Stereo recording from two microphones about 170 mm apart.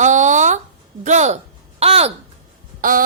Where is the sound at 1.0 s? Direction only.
45° right (ahead or behind).